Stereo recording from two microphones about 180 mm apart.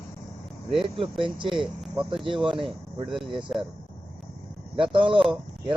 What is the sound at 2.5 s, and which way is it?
Speech, 30° right (ahead or behind).